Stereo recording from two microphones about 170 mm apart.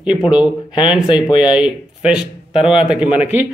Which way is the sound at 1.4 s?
5° right (ahead or behind).